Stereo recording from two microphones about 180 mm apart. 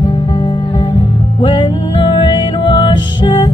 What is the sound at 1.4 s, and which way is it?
Music, 25° left (ahead or behind).